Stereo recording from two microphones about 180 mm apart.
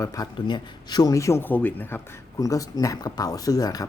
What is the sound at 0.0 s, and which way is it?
Speech, 25° left (ahead or behind).